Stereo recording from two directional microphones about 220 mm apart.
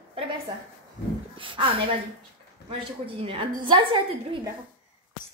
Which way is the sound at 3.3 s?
25° right (ahead or behind).